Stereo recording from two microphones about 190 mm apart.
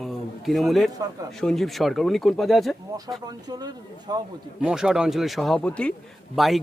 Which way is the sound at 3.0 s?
20° right (ahead or behind).